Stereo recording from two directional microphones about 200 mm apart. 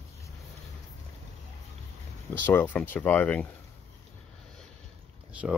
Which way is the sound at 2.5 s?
10° left (ahead or behind).